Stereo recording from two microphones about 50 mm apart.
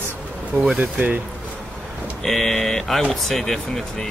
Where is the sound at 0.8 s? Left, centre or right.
Right.